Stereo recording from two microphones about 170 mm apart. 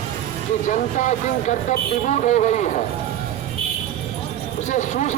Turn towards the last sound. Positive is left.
turn(degrees=45)  # may be behind; listen again after turning